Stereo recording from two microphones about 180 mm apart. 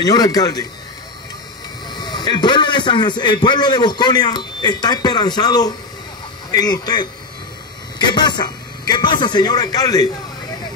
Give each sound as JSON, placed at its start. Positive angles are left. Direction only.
{"t": 0.0, "sound": "a man's voice", "side_deg": 20}
{"t": 1.9, "sound": "a man's voice", "side_deg": 25}